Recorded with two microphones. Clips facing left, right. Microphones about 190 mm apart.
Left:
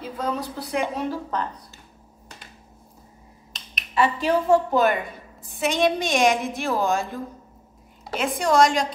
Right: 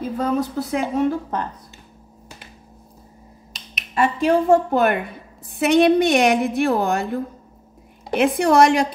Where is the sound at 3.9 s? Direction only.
50° right (ahead or behind).